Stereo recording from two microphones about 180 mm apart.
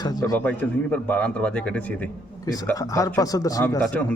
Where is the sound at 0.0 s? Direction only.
20° left (ahead or behind).